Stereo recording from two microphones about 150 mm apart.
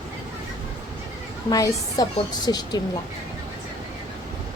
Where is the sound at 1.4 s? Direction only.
25° left (ahead or behind).